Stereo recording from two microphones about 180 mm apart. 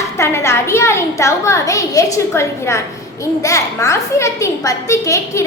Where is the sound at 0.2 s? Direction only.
15° left (ahead or behind).